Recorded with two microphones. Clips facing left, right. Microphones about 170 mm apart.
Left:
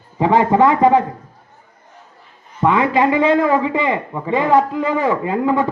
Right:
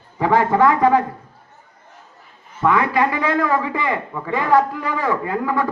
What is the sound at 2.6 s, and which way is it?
A man's voice, 20° left (ahead or behind).